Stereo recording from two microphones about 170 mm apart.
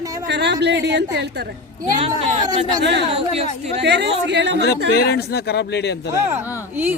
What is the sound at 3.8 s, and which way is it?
Speech, 90° right.